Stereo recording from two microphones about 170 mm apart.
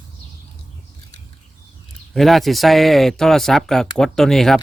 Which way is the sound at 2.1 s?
Centre (ahead or behind).